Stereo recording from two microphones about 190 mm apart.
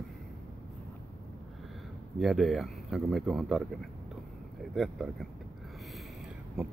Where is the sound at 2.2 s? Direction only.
Centre (ahead or behind).